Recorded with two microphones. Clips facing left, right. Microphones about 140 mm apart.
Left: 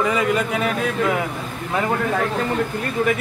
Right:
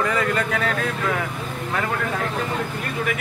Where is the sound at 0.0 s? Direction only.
15° left (ahead or behind).